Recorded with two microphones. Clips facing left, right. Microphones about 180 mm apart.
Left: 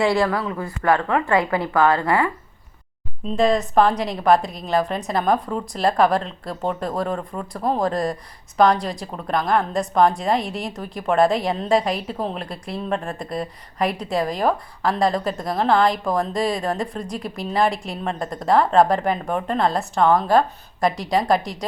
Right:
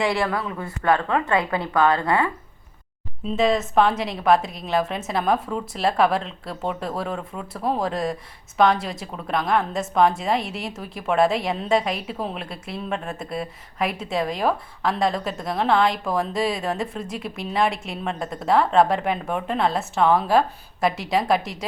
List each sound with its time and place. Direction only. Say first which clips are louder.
1.7 s speech: left 1 dB; 20° right (ahead or behind)
3.2 s a woman's voice: left 2 dB; centre (ahead or behind)